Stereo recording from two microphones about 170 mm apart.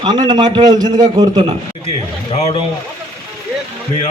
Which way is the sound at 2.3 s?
40° left (ahead or behind).